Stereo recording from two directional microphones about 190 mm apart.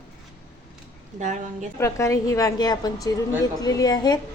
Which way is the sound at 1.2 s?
40° right (ahead or behind).